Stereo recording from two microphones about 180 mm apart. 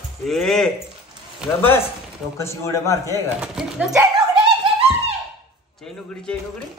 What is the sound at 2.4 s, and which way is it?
Speech, 15° left (ahead or behind).